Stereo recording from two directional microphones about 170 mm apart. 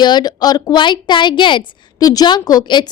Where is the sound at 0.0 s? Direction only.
25° left (ahead or behind).